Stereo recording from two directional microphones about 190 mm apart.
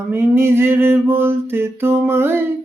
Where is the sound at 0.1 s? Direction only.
10° right (ahead or behind).